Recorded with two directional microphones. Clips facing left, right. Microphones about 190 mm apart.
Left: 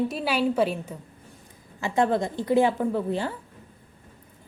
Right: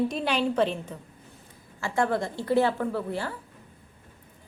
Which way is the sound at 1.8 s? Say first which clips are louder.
Left 3 dB; 20° left (ahead or behind).